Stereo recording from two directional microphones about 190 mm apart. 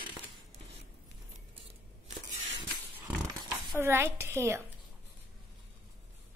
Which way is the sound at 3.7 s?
10° right (ahead or behind).